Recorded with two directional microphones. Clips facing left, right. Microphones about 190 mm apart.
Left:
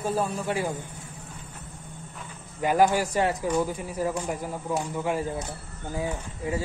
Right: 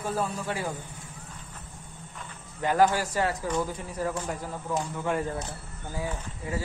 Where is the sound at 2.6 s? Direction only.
15° left (ahead or behind).